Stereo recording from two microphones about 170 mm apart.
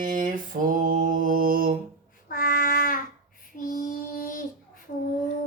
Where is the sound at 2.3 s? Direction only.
60° left (ahead or behind).